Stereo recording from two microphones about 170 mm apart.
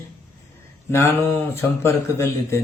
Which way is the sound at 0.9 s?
15° left (ahead or behind).